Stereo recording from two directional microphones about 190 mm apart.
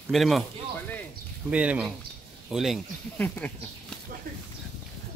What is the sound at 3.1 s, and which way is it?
Speech, 10° left (ahead or behind).